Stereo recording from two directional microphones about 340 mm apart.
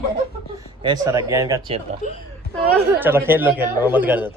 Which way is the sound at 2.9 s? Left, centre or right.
Centre.